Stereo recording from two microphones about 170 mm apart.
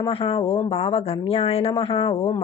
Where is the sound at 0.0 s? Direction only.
30° left (ahead or behind).